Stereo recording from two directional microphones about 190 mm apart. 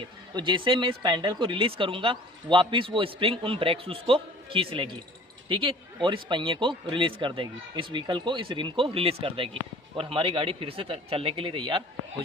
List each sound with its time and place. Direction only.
0.3 s speech: 25° right (ahead or behind)